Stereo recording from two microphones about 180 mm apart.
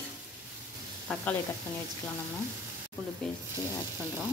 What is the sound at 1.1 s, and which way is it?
Speech, 5° left (ahead or behind).